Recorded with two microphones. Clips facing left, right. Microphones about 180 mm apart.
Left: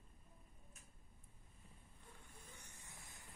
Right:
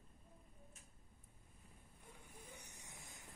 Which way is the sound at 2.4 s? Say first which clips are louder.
Right 3 dB; 15° right (ahead or behind).